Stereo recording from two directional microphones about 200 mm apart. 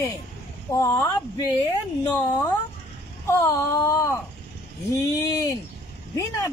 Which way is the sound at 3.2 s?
15° left (ahead or behind).